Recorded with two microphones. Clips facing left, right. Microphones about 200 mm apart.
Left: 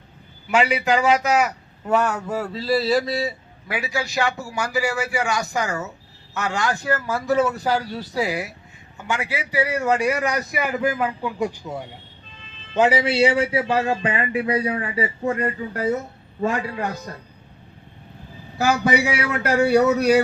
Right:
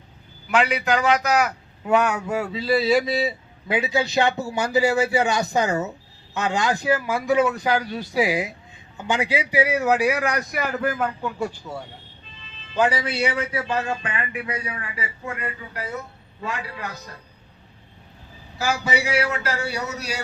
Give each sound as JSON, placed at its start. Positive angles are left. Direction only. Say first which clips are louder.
{"t": 0.4, "sound": "a man's voice", "louder": "left 2 dB", "side_deg": 5}
{"t": 3.0, "sound": "a man's voice", "louder": "right 1 dB", "side_deg": -15}
{"t": 7.5, "sound": "a man's voice", "louder": "even", "side_deg": 5}
{"t": 8.1, "sound": "a man's voice", "louder": "right 3 dB", "side_deg": -15}
{"t": 18.5, "sound": "a man's voice", "louder": "left 5 dB", "side_deg": 60}